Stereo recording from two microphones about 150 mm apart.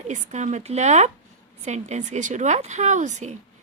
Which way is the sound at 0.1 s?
50° right (ahead or behind).